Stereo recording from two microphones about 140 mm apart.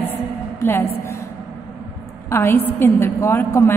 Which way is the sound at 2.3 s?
15° left (ahead or behind).